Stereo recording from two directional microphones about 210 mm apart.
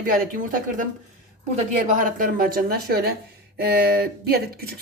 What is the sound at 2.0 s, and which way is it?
A woman's voice, 40° right (ahead or behind).